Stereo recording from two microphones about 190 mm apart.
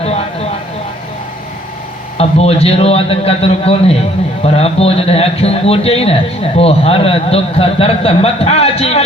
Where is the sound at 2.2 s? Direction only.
30° left (ahead or behind).